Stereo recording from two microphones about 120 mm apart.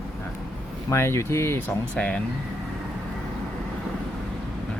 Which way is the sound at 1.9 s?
10° left (ahead or behind).